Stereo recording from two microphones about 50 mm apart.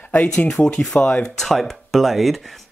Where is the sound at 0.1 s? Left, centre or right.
Left.